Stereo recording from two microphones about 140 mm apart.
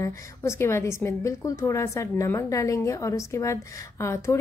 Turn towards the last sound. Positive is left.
turn(degrees=20)  # may be behind; listen again after turning